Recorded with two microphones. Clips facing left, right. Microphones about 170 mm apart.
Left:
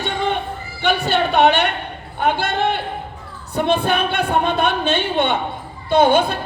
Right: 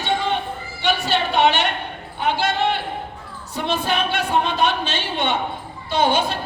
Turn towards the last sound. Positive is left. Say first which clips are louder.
# left 5 dB
turn(degrees=55)  # may be behind; listen again after turning